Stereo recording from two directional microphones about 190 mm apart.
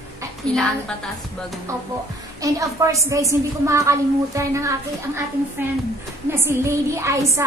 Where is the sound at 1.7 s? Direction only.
15° right (ahead or behind).